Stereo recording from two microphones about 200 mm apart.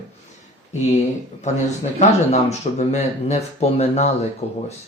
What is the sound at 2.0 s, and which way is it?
Speech, 35° left (ahead or behind).